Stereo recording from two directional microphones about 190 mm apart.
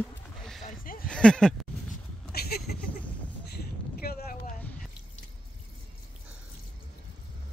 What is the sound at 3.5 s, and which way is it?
Vehicle, 55° left (ahead or behind).